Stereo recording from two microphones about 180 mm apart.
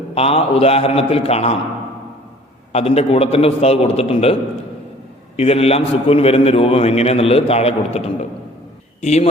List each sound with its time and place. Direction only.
0.1 s a man's voice: 35° left (ahead or behind)
2.7 s a man's voice: 35° left (ahead or behind)
5.4 s a man's voice: 35° left (ahead or behind)